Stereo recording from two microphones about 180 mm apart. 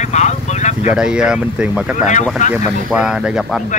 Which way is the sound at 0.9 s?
5° right (ahead or behind).